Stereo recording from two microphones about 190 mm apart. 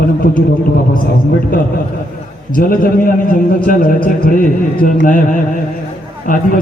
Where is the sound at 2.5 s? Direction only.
45° left (ahead or behind).